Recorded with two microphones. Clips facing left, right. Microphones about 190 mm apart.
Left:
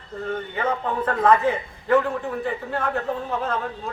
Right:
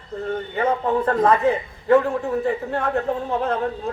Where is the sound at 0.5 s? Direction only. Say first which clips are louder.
Right 6 dB; 35° right (ahead or behind).